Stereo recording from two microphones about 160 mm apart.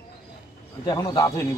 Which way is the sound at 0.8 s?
25° left (ahead or behind).